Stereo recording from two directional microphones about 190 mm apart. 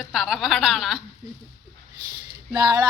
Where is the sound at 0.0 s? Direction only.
Centre (ahead or behind).